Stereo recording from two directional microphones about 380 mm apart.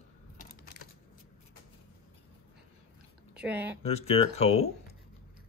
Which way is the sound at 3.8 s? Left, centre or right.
Centre.